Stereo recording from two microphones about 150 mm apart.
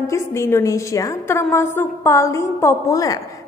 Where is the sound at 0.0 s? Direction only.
20° left (ahead or behind).